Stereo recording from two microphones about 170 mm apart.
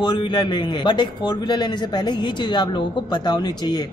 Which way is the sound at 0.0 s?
25° left (ahead or behind).